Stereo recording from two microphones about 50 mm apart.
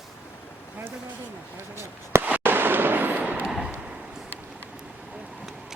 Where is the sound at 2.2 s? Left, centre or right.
Right.